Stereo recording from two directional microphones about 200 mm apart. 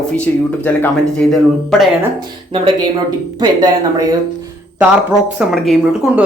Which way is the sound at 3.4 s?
20° right (ahead or behind).